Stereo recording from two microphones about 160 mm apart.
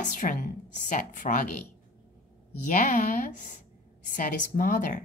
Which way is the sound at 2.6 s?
50° left (ahead or behind).